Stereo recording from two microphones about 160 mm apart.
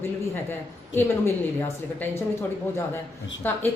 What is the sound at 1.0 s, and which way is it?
A woman's voice, 15° left (ahead or behind).